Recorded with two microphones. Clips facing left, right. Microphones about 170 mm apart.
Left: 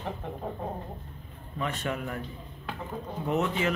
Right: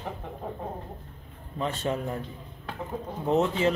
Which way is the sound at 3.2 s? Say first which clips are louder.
Right 4 dB; 30° right (ahead or behind).